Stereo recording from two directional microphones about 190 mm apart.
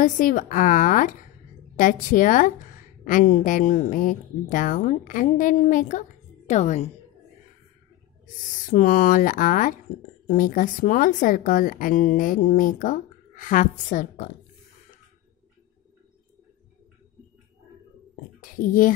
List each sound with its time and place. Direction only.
0.0 s a woman's voice: 45° left (ahead or behind)
8.6 s a woman's voice: 45° left (ahead or behind)
18.4 s speech: 45° left (ahead or behind)